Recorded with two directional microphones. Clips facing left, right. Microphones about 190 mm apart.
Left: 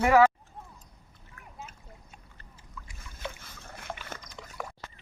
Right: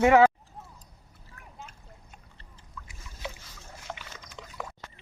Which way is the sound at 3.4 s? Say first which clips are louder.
Left 2 dB; 55° left (ahead or behind).